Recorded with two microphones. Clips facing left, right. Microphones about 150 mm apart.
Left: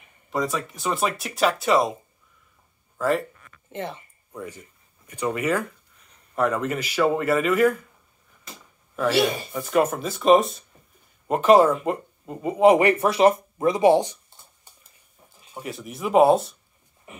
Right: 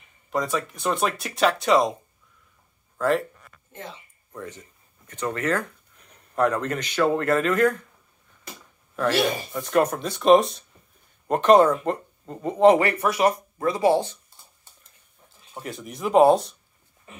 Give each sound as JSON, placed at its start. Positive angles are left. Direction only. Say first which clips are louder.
{"t": 0.3, "sound": "speech", "louder": "even", "side_deg": 0}
{"t": 3.0, "sound": "speech", "louder": "right 1 dB", "side_deg": 0}
{"t": 3.7, "sound": "speech", "louder": "left 7 dB", "side_deg": 65}
{"t": 4.3, "sound": "speech", "louder": "left 1 dB", "side_deg": 10}
{"t": 8.9, "sound": "speech", "louder": "left 1 dB", "side_deg": 5}
{"t": 15.5, "sound": "speech", "louder": "left 1 dB", "side_deg": 0}
{"t": 17.1, "sound": "dog", "louder": "left 2 dB", "side_deg": 15}